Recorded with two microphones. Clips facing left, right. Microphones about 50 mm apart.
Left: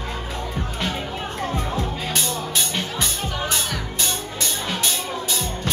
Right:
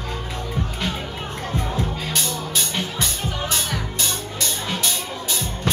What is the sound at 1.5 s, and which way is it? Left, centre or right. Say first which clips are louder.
Music: even; centre.